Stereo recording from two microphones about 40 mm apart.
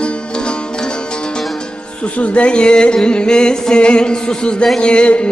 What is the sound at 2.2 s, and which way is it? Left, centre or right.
Music, left.